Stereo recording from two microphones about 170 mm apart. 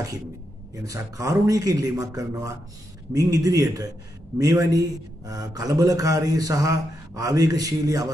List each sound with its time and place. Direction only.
0.7 s a man's voice: 20° right (ahead or behind)